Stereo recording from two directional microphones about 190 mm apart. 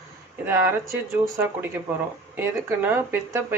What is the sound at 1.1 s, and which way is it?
Speech, 10° right (ahead or behind).